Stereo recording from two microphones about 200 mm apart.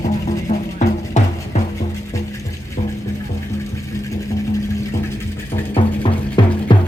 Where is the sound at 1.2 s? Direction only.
35° left (ahead or behind).